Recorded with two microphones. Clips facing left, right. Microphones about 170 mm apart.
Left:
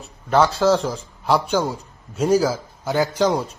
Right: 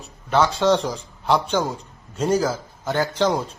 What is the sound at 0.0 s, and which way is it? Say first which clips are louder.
A man's voice: left 2 dB; 10° left (ahead or behind).